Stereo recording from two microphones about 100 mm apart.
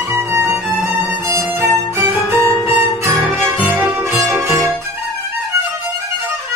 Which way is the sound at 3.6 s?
20° right (ahead or behind).